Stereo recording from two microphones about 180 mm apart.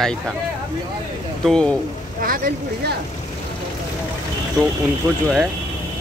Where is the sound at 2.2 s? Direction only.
50° right (ahead or behind).